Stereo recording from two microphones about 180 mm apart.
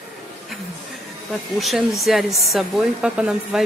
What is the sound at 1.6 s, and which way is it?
Speech, centre (ahead or behind).